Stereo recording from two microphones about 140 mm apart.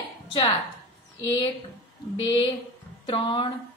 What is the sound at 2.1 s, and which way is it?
A woman's voice, 40° left (ahead or behind).